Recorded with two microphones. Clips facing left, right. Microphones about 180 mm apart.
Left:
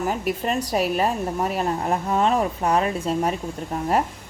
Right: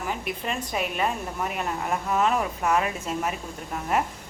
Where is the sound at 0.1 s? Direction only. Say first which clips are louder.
Left 6 dB; 40° left (ahead or behind).